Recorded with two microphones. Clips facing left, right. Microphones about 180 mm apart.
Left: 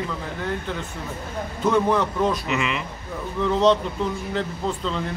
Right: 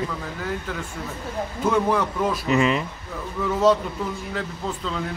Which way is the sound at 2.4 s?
40° right (ahead or behind).